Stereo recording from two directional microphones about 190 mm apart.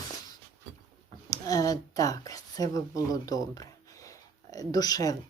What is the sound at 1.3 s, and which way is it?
A woman's voice, 20° left (ahead or behind).